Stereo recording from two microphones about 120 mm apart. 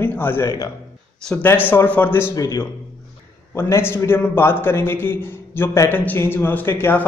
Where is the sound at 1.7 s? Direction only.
15° left (ahead or behind).